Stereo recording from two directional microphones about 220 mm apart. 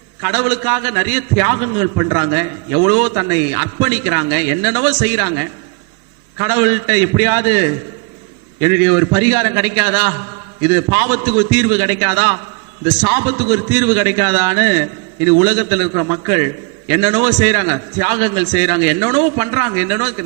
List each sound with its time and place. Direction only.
0.2 s a man's voice: 15° right (ahead or behind)